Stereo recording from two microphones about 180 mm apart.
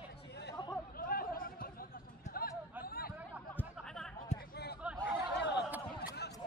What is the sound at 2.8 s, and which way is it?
Chatter, 55° left (ahead or behind).